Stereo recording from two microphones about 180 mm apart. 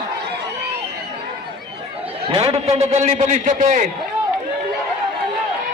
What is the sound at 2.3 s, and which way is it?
A man's voice, 30° right (ahead or behind).